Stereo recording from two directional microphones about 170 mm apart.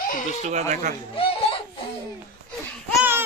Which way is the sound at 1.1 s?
35° left (ahead or behind).